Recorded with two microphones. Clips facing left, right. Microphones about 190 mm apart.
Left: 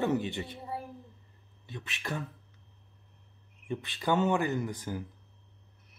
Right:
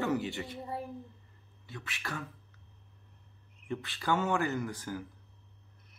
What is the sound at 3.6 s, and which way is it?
Speech, 20° left (ahead or behind).